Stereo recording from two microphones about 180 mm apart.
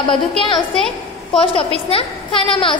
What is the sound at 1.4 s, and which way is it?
A woman's voice, 30° left (ahead or behind).